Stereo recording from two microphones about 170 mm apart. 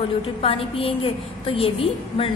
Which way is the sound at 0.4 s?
35° left (ahead or behind).